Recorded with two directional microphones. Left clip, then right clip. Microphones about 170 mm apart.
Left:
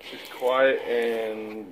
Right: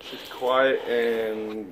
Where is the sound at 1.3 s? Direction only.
Centre (ahead or behind).